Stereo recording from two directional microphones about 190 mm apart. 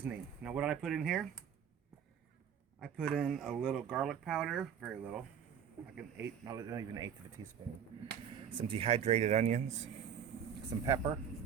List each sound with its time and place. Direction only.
0.0 s speech: 5° right (ahead or behind)
2.8 s speech: centre (ahead or behind); by 7.1 s 20° right (ahead or behind)
8.4 s speech: 30° right (ahead or behind)
10.8 s speech: 20° right (ahead or behind)